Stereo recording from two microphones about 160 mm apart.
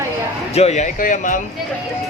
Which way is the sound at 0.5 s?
45° left (ahead or behind).